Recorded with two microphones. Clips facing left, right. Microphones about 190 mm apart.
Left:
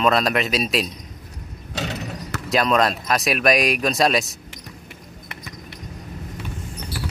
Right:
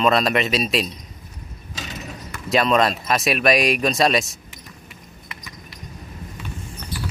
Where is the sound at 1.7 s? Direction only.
70° left (ahead or behind).